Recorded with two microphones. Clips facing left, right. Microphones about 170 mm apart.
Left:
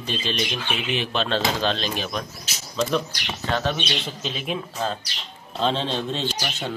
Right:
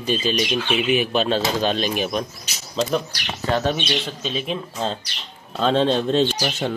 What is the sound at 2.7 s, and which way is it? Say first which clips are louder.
Speech: right 2 dB; 35° right (ahead or behind).